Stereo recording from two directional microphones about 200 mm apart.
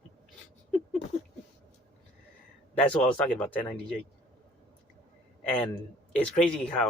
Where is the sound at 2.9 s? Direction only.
5° left (ahead or behind).